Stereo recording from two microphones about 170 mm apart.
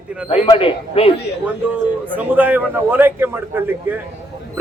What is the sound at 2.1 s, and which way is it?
Speech, 10° right (ahead or behind).